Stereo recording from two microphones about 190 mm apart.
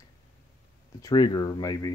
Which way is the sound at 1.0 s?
20° left (ahead or behind).